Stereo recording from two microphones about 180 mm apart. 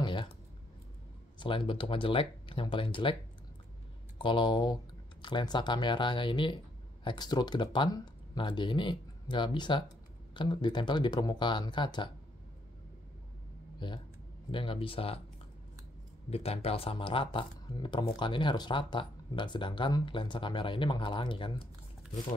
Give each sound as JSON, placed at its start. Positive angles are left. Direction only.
{"t": 0.0, "sound": "a sound", "side_deg": 25}
{"t": 1.4, "sound": "speech", "side_deg": 30}
{"t": 4.2, "sound": "speech", "side_deg": 25}
{"t": 13.7, "sound": "speech", "side_deg": 25}
{"t": 16.3, "sound": "speech", "side_deg": 35}